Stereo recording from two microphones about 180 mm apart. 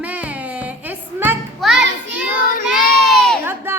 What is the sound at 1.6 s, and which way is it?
Children playing, centre (ahead or behind).